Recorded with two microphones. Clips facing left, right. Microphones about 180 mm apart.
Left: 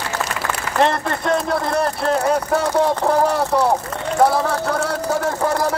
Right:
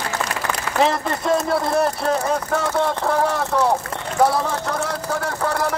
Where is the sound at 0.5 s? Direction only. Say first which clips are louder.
Left 1 dB; centre (ahead or behind).